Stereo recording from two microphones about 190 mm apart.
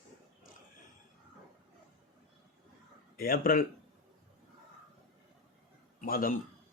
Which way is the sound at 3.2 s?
50° left (ahead or behind).